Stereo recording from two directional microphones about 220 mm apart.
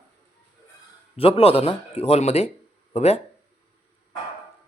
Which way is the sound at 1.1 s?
25° left (ahead or behind).